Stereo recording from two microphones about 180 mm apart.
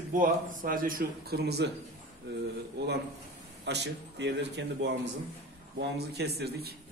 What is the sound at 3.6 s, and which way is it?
Speech, 70° right (ahead or behind).